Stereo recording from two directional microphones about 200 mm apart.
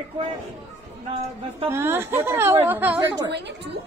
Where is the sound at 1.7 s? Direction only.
10° right (ahead or behind).